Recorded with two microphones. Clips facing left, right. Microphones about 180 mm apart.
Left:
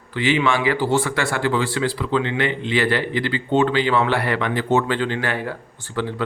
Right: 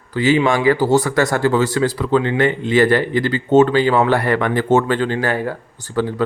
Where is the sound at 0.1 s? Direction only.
40° right (ahead or behind).